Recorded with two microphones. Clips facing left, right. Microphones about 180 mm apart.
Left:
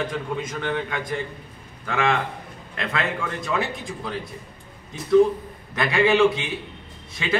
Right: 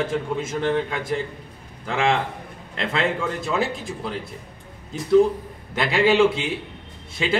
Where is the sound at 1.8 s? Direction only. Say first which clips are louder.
Right 1 dB; 25° right (ahead or behind).